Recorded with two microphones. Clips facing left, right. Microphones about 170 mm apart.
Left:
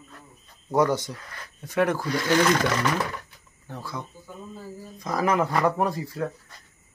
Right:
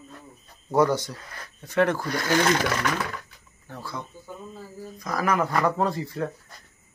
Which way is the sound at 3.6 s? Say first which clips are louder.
Left 1 dB; 15° left (ahead or behind).